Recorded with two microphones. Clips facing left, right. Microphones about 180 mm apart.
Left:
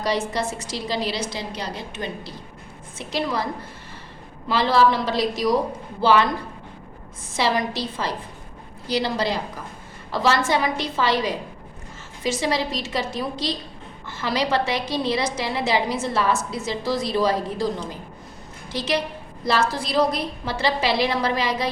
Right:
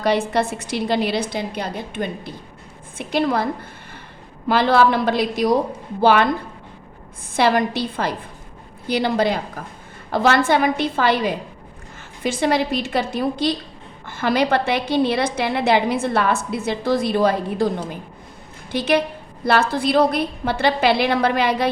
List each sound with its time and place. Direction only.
0.0 s a woman's voice: 60° right (ahead or behind)
7.3 s a woman's voice: 55° right (ahead or behind)
18.7 s a woman's voice: 55° right (ahead or behind)